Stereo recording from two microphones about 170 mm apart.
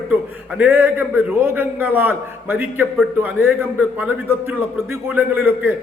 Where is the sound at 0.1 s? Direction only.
10° right (ahead or behind).